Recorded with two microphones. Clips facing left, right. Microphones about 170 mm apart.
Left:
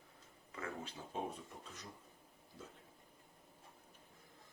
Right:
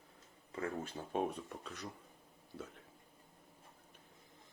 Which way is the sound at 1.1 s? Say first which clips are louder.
Right 6 dB; 65° right (ahead or behind).